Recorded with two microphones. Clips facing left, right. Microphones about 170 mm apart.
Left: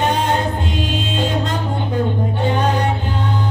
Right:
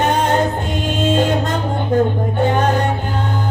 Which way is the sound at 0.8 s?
45° right (ahead or behind).